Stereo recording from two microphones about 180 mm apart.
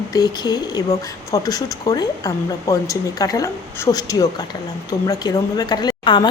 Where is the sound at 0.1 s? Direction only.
20° left (ahead or behind).